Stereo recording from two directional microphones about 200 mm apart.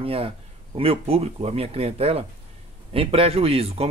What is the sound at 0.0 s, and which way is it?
Speech, 30° right (ahead or behind).